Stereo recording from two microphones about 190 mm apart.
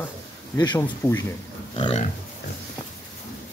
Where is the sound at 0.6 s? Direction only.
20° left (ahead or behind).